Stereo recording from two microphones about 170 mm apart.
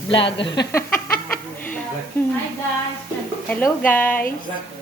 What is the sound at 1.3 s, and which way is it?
Chuckle, 10° left (ahead or behind).